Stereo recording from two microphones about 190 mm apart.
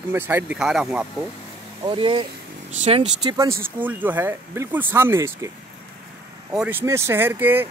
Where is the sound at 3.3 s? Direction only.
15° right (ahead or behind).